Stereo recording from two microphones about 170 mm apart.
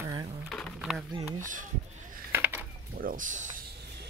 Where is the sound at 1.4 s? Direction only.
50° right (ahead or behind).